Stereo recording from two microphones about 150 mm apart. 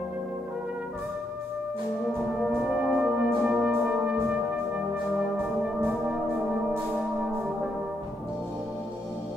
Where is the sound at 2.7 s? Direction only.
10° right (ahead or behind).